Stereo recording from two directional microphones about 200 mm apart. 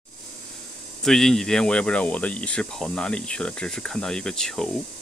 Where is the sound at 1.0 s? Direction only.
Centre (ahead or behind).